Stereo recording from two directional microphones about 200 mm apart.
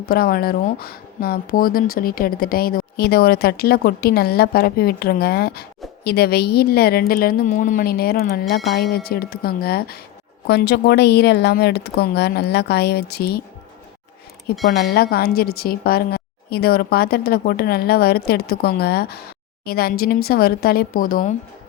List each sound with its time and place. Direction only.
0.0 s a woman's voice: 50° left (ahead or behind)
14.8 s speech: 50° left (ahead or behind)